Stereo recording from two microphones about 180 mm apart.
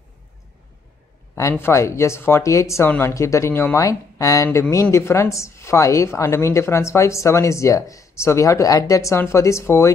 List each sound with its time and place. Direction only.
1.3 s a woman's voice: 15° left (ahead or behind)